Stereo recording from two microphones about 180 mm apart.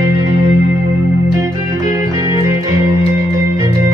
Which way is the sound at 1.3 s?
20° right (ahead or behind).